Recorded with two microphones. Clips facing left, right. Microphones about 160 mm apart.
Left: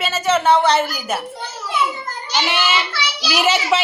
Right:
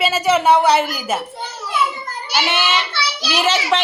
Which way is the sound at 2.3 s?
Centre (ahead or behind).